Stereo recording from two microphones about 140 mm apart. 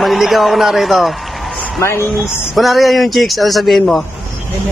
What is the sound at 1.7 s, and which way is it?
Speech, 20° left (ahead or behind).